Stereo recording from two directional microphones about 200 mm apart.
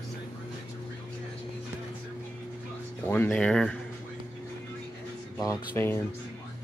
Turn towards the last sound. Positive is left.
turn(degrees=15)  # may be behind; listen again after turning